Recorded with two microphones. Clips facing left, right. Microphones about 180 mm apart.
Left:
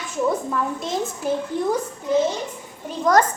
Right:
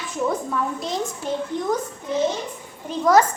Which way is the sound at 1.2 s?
5° left (ahead or behind).